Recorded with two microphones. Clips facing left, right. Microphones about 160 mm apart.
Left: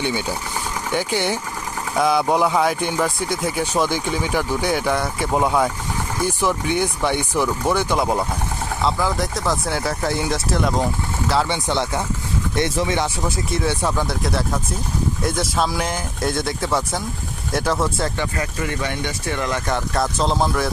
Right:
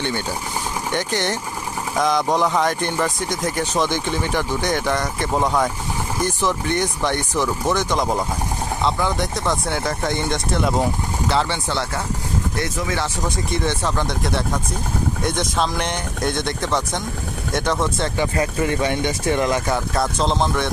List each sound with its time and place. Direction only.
0.0 s speech: 10° left (ahead or behind)
11.4 s speech: 15° left (ahead or behind)
13.2 s speech: 5° left (ahead or behind)
18.2 s speech: 20° right (ahead or behind); by 20.7 s 5° left (ahead or behind)